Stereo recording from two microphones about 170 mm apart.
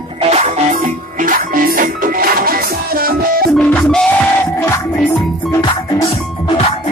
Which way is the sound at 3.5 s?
5° left (ahead or behind).